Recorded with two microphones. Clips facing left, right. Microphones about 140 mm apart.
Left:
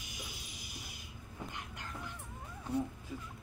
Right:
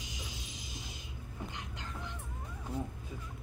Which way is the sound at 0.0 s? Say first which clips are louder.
Right 3 dB; 20° right (ahead or behind).